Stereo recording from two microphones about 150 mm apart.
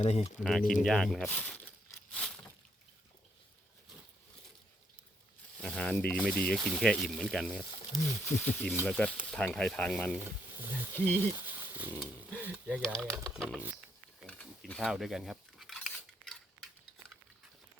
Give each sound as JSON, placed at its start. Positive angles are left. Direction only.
{"t": 0.0, "sound": "speech", "side_deg": 45}
{"t": 0.6, "sound": "speech", "side_deg": 60}
{"t": 0.9, "sound": "speech", "side_deg": 5}
{"t": 2.1, "sound": "a sound", "side_deg": 5}
{"t": 5.5, "sound": "speech", "side_deg": 5}
{"t": 8.2, "sound": "speech", "side_deg": 10}
{"t": 10.6, "sound": "speech", "side_deg": -15}
{"t": 10.9, "sound": "speech", "side_deg": 15}
{"t": 11.2, "sound": "speech", "side_deg": -15}
{"t": 11.9, "sound": "a sound", "side_deg": -10}
{"t": 12.6, "sound": "speech", "side_deg": 5}
{"t": 14.3, "sound": "cutlery", "side_deg": 5}